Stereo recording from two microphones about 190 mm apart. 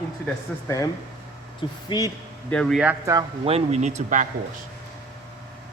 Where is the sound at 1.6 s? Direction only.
25° left (ahead or behind).